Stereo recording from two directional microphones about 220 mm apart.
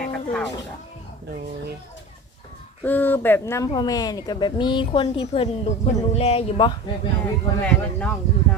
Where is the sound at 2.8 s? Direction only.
10° left (ahead or behind); by 6.7 s 25° left (ahead or behind).